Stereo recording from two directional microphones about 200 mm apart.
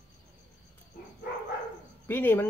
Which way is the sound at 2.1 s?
10° left (ahead or behind).